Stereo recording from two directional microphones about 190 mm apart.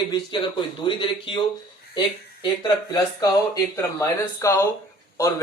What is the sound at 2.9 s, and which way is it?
A man's voice, 20° left (ahead or behind).